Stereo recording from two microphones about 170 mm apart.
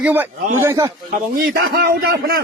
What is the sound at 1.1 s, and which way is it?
A man's voice, 60° right (ahead or behind).